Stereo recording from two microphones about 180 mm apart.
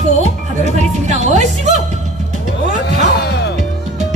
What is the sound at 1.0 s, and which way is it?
Music, 40° right (ahead or behind).